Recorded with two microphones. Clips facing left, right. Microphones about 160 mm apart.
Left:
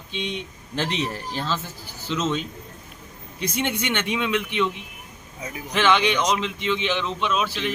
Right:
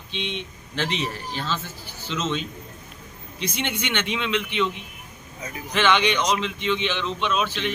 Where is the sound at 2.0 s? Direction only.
15° left (ahead or behind).